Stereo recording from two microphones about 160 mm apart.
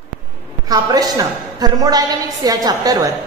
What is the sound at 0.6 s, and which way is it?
A woman's voice, 25° right (ahead or behind).